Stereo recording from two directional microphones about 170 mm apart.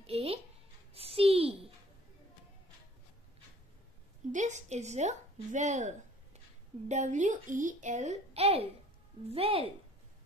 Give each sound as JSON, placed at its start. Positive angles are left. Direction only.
{"t": 0.0, "sound": "music", "side_deg": -35}
{"t": 0.9, "sound": "a sound", "side_deg": -35}
{"t": 4.3, "sound": "a woman's voice", "side_deg": -45}